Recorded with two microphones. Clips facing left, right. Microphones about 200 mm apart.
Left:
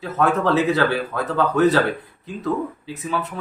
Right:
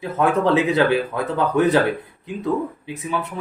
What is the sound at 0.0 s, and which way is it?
Speech, 15° right (ahead or behind).